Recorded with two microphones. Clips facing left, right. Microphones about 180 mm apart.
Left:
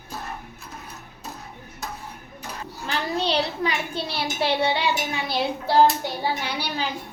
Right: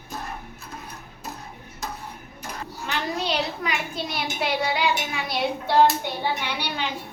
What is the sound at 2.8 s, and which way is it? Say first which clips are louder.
A child's voice: left 2 dB; 30° left (ahead or behind).